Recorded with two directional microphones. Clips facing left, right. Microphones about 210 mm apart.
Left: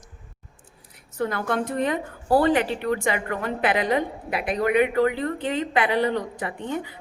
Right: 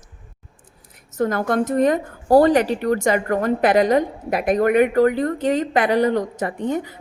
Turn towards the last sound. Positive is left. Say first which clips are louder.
# right 6 dB
turn(degrees=-45)  # may be behind; listen again after turning